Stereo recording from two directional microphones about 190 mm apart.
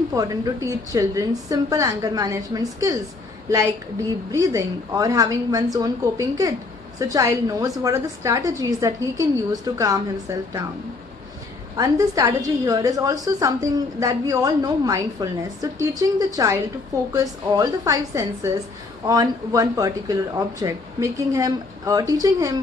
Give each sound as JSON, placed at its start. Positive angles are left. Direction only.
{"t": 0.1, "sound": "a woman's voice", "side_deg": -20}
{"t": 11.7, "sound": "a woman's voice", "side_deg": -20}